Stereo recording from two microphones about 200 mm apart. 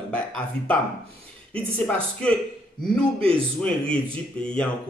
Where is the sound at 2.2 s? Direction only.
5° left (ahead or behind).